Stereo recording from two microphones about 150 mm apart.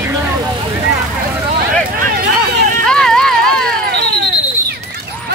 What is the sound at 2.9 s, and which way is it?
Clip-clop, 5° left (ahead or behind).